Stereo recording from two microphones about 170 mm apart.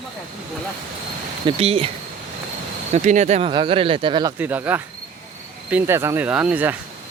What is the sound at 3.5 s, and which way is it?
Speech, 30° right (ahead or behind).